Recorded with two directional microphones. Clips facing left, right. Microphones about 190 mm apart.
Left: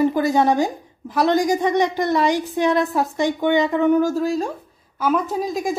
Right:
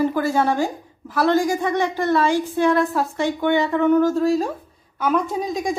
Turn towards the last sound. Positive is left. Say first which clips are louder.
# left 1 dB
turn(degrees=0)  # may be behind; listen again after turning